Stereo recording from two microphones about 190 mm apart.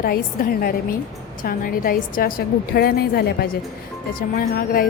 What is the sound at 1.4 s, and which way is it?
A woman's voice, 50° left (ahead or behind).